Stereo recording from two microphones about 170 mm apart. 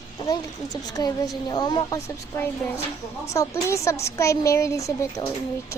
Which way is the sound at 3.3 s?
15° left (ahead or behind).